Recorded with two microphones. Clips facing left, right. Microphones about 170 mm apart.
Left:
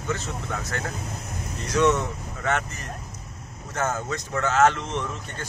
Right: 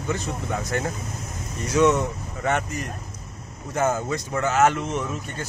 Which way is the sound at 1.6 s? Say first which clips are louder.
Right 2 dB; 10° right (ahead or behind).